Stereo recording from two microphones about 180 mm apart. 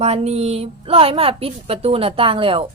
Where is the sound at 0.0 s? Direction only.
35° right (ahead or behind).